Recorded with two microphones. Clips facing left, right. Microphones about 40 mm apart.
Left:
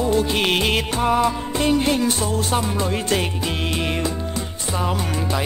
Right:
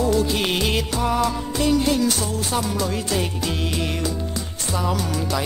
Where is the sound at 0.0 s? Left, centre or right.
Left.